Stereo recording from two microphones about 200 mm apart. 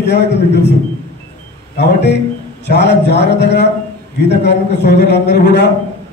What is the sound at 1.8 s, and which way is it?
A man's voice, 60° left (ahead or behind).